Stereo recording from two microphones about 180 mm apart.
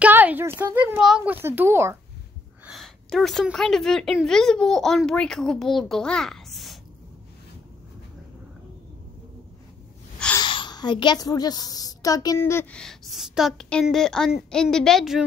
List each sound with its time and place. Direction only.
0.0 s a child's voice: 10° right (ahead or behind)
2.6 s a woman's voice: centre (ahead or behind)
10.1 s gasp: 5° left (ahead or behind)
10.4 s a woman's voice: 25° left (ahead or behind)
12.8 s a woman's voice: centre (ahead or behind)